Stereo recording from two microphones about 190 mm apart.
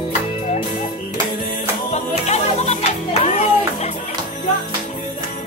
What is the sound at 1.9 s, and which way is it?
Music, 35° left (ahead or behind).